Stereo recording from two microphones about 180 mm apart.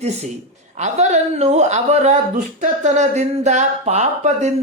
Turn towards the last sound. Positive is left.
turn(degrees=-40)  # may be behind; listen again after turning